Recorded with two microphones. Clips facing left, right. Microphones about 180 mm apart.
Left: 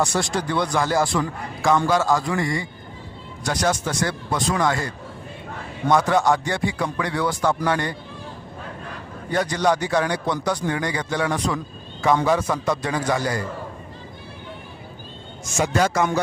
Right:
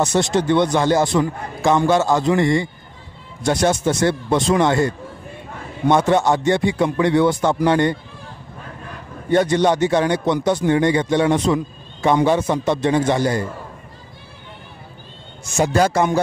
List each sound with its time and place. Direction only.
0.0 s a man's voice: 20° right (ahead or behind)
9.3 s a man's voice: 25° right (ahead or behind)
15.5 s a man's voice: 35° right (ahead or behind)